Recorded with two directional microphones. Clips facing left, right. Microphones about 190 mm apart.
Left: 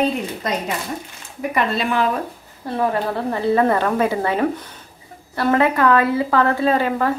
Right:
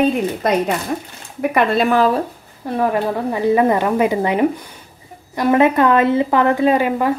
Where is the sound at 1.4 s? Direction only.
60° right (ahead or behind).